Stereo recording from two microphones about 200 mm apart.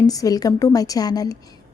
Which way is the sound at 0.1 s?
20° left (ahead or behind).